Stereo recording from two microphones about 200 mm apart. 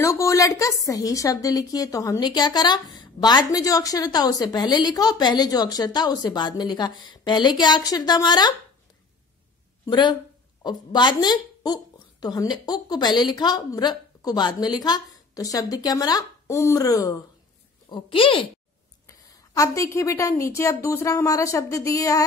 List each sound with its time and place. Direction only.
0.0 s a woman's voice: 15° left (ahead or behind)
9.8 s a woman's voice: 20° left (ahead or behind)